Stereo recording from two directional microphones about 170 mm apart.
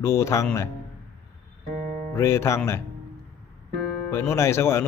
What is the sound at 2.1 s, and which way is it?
Speech, 15° left (ahead or behind).